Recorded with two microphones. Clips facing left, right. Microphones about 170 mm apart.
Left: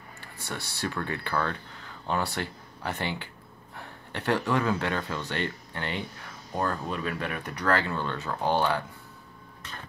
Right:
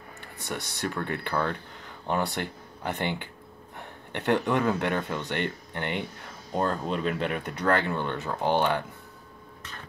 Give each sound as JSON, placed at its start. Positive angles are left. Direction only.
{"t": 0.2, "sound": "speech", "side_deg": -20}